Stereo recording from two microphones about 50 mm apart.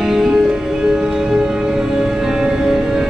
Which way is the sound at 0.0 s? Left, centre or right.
Centre.